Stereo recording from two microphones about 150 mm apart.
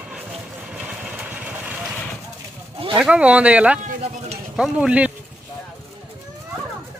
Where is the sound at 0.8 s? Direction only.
10° right (ahead or behind).